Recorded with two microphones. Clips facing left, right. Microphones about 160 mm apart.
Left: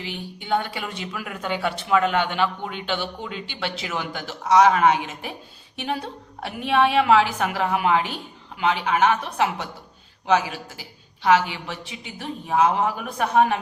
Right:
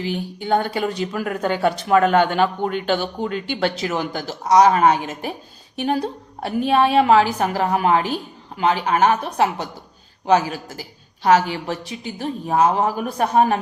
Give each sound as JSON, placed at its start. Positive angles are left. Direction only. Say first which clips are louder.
{"t": 0.0, "sound": "speech", "louder": "right 8 dB", "side_deg": -40}